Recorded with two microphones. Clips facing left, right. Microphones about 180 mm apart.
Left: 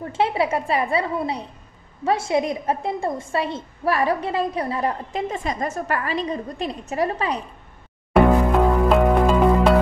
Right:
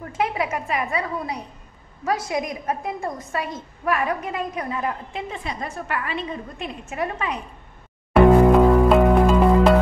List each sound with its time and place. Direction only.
0.0 s a woman's voice: 30° left (ahead or behind)
8.1 s music: centre (ahead or behind)